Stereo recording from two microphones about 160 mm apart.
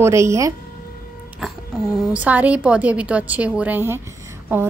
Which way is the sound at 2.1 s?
10° right (ahead or behind).